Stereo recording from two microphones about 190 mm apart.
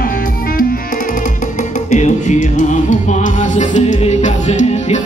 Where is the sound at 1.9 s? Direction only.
40° left (ahead or behind).